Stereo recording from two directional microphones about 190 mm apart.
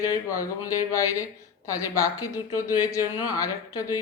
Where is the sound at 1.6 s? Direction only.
15° left (ahead or behind).